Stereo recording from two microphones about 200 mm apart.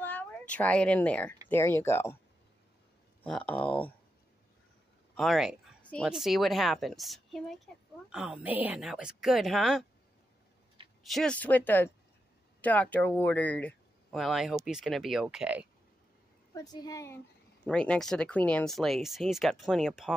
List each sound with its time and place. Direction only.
0.0 s speech: 10° left (ahead or behind)
3.3 s speech: 5° left (ahead or behind)
5.1 s a sound: centre (ahead or behind)
6.0 s speech: centre (ahead or behind)
11.1 s speech: 5° left (ahead or behind)
16.5 s a woman's voice: 20° left (ahead or behind)
17.6 s speech: 5° left (ahead or behind)